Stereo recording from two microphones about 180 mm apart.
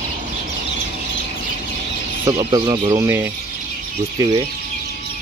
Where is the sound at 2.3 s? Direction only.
25° right (ahead or behind).